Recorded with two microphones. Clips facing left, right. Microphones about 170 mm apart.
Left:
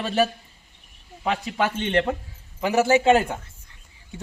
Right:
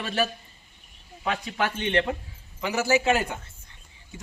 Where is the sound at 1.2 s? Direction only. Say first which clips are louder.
Left 3 dB; 30° left (ahead or behind).